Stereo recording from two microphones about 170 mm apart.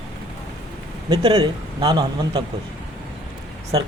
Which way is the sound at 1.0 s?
35° right (ahead or behind).